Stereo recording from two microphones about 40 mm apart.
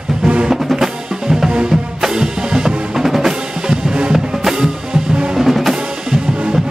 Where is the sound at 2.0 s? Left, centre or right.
Centre.